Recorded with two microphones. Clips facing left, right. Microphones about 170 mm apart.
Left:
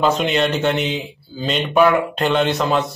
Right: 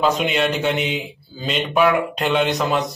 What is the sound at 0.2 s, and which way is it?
A man's voice, 5° right (ahead or behind).